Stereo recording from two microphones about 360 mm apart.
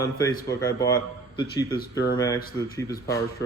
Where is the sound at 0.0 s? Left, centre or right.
Centre.